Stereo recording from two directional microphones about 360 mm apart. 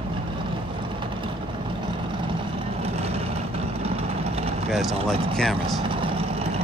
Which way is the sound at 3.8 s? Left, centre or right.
Centre.